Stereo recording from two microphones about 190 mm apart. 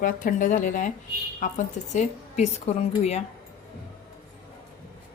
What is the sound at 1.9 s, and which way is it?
A woman's voice, 40° left (ahead or behind).